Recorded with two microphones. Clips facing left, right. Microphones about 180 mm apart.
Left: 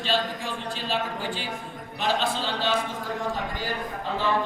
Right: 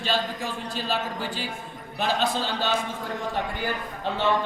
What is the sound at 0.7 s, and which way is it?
A man's voice, 40° right (ahead or behind).